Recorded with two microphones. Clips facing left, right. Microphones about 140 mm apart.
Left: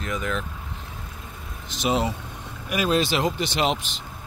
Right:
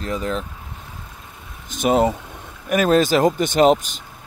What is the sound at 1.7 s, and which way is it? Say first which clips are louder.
Speech: right 7 dB; 50° right (ahead or behind).